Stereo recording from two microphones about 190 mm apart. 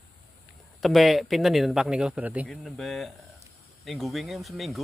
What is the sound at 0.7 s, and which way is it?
Speech, centre (ahead or behind).